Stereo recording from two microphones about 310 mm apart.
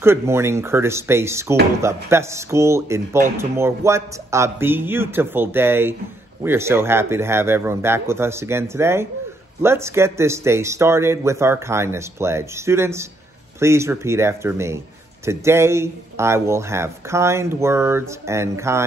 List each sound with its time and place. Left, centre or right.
0.0 s speech: centre